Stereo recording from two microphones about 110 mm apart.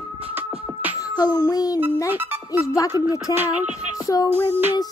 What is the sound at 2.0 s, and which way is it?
Music, 20° right (ahead or behind).